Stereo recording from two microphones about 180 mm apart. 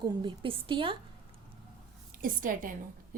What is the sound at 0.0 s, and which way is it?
Speech, 25° right (ahead or behind).